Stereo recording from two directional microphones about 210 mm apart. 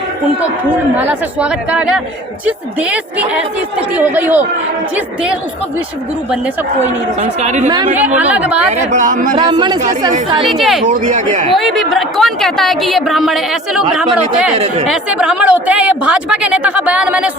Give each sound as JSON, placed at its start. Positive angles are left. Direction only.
{"t": 0.9, "sound": "speech", "side_deg": -5}
{"t": 7.2, "sound": "speech", "side_deg": -35}
{"t": 7.7, "sound": "speech", "side_deg": -20}
{"t": 8.2, "sound": "speech", "side_deg": -5}
{"t": 8.9, "sound": "speech", "side_deg": -35}
{"t": 9.5, "sound": "speech", "side_deg": -20}
{"t": 10.5, "sound": "a woman's voice", "side_deg": 0}
{"t": 10.8, "sound": "speech", "side_deg": -35}
{"t": 11.5, "sound": "a woman's voice", "side_deg": 0}
{"t": 14.5, "sound": "speech", "side_deg": -30}
{"t": 14.8, "sound": "a woman's voice", "side_deg": -5}